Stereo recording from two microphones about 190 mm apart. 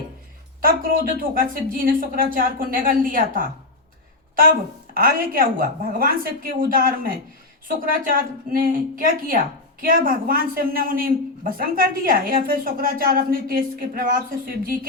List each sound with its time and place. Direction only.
0.6 s a woman's voice: 50° right (ahead or behind)
4.9 s a woman's voice: 50° right (ahead or behind)